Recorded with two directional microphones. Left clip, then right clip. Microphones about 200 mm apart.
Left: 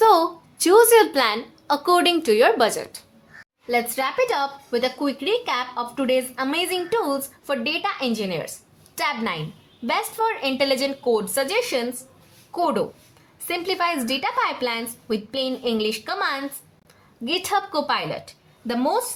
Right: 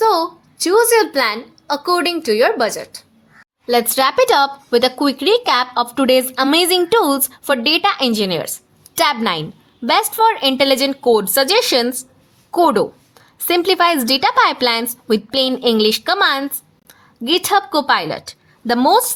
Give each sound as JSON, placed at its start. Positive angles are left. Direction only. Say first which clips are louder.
{"t": 0.0, "sound": "a sound", "louder": "right 1 dB", "side_deg": -10}
{"t": 1.1, "sound": "a woman's voice", "louder": "right 4 dB", "side_deg": -15}
{"t": 3.7, "sound": "a woman's voice", "louder": "right 8 dB", "side_deg": -55}